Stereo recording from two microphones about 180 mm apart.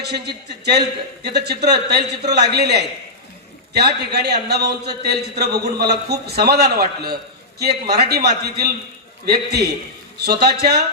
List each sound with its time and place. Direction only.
0.0 s a man's voice: 65° right (ahead or behind)